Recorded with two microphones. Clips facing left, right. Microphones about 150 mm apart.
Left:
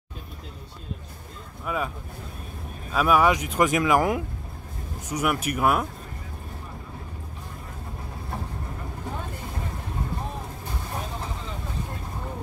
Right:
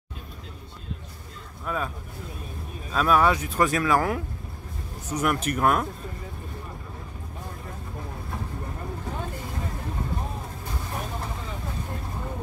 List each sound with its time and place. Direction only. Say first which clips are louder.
1.7 s speech: left 1 dB; 10° left (ahead or behind)
2.9 s speech: left 1 dB; 10° left (ahead or behind)